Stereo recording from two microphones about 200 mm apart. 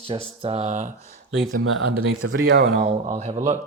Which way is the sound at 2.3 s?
65° right (ahead or behind).